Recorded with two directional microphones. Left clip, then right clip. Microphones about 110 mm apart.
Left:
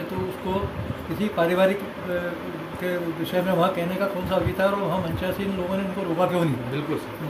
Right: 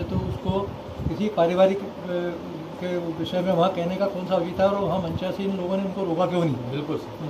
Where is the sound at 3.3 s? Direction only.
20° left (ahead or behind).